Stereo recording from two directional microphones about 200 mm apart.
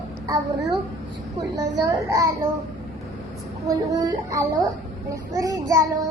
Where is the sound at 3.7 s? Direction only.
15° right (ahead or behind).